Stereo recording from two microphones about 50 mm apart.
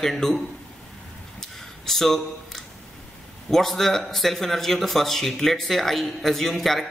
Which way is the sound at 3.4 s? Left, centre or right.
Centre.